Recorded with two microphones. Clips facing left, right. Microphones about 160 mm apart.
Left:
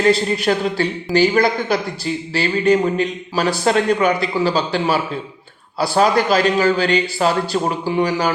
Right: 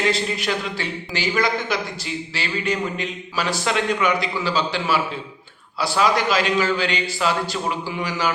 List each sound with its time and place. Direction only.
0.0 s speech: 40° left (ahead or behind)